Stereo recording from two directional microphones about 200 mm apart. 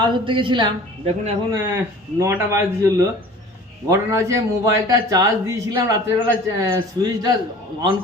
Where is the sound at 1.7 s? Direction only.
10° right (ahead or behind).